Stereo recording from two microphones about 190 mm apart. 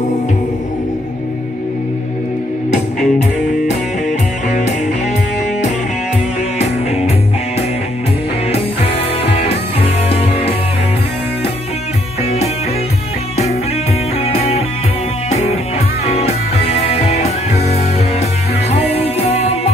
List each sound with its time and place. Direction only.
2.7 s music: 40° left (ahead or behind)
9.4 s music: 30° left (ahead or behind)
14.3 s music: 35° left (ahead or behind)
18.9 s music: 35° left (ahead or behind)